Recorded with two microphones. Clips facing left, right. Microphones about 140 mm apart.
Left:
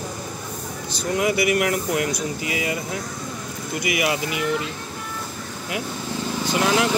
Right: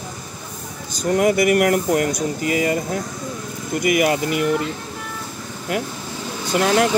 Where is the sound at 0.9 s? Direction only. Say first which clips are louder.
Right 5 dB; 45° right (ahead or behind).